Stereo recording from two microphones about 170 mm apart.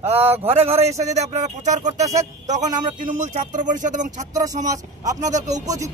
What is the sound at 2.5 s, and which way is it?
Speech, 45° right (ahead or behind).